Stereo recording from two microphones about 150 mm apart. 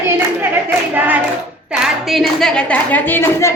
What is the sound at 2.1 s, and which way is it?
A woman's voice, centre (ahead or behind).